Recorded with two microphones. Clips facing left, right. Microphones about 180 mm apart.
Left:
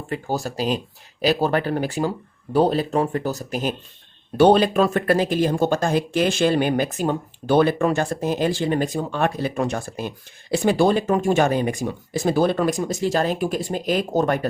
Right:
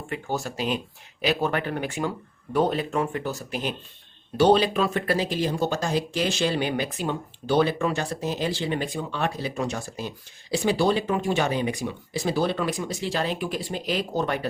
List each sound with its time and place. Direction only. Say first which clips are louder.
0.1 s speech: left 4 dB; 35° left (ahead or behind)
4.4 s speech: left 4 dB; 55° left (ahead or behind)